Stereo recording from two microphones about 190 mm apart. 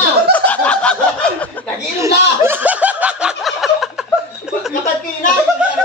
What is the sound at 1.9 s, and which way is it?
Snicker, 15° right (ahead or behind).